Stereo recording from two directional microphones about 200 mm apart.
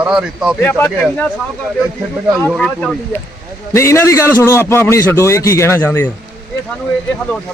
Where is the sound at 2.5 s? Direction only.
5° left (ahead or behind).